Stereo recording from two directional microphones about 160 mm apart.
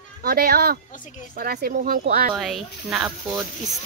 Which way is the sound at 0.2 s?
75° right (ahead or behind).